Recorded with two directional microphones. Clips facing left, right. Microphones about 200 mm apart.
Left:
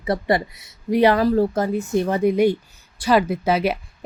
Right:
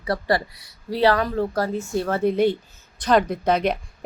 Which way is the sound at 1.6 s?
20° left (ahead or behind).